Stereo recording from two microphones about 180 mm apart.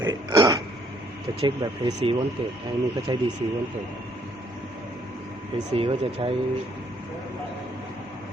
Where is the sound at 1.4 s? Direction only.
30° right (ahead or behind).